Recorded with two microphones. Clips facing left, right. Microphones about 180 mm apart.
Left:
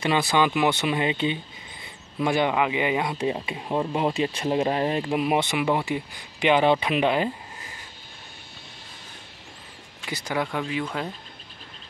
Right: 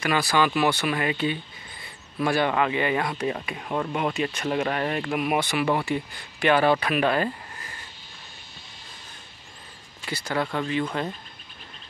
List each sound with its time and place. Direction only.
0.0 s speech: 20° left (ahead or behind)
10.0 s speech: 15° left (ahead or behind)